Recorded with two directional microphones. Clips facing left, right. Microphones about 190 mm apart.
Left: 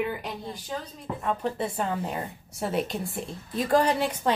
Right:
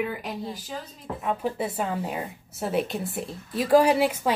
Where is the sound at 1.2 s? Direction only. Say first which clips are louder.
Right 1 dB; 5° right (ahead or behind).